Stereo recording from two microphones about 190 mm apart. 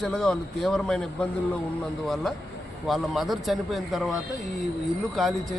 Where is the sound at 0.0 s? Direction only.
5° left (ahead or behind).